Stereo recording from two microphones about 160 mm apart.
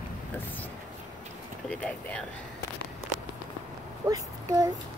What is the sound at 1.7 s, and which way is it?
Speech, 5° left (ahead or behind).